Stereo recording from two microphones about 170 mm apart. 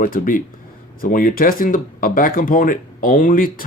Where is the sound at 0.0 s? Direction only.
55° left (ahead or behind).